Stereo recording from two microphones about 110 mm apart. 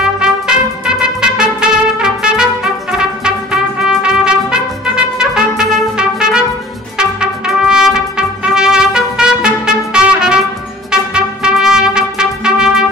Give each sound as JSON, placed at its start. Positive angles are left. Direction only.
{"t": 0.0, "sound": "trumpet", "side_deg": -5}
{"t": 10.9, "sound": "music", "side_deg": -5}